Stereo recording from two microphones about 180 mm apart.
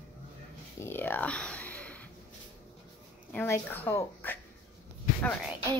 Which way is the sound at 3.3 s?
10° left (ahead or behind).